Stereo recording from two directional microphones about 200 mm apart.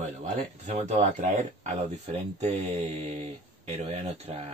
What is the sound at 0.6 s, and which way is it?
Speech, 35° right (ahead or behind).